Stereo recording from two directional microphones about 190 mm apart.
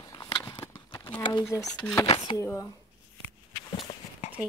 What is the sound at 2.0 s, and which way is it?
Speech, 25° left (ahead or behind).